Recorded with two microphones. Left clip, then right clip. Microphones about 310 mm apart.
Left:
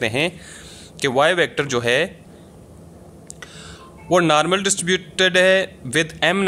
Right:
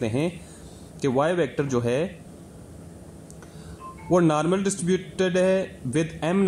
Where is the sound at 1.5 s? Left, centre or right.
Left.